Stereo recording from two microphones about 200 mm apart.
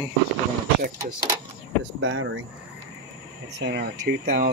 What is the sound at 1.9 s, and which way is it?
Speech, 70° right (ahead or behind).